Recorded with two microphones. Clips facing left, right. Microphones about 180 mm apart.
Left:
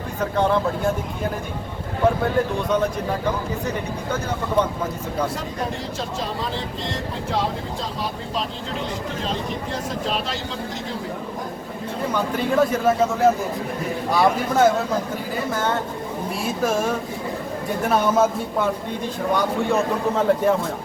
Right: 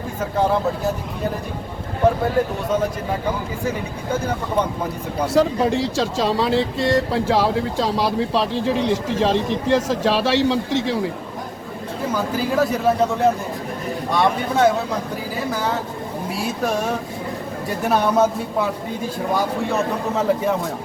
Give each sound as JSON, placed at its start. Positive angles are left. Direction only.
{"t": 0.3, "sound": "speech", "side_deg": -5}
{"t": 5.3, "sound": "speech", "side_deg": -85}
{"t": 12.1, "sound": "speech", "side_deg": 0}